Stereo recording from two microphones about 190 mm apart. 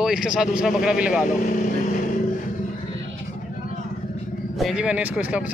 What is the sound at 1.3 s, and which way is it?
Vehicle, 45° left (ahead or behind).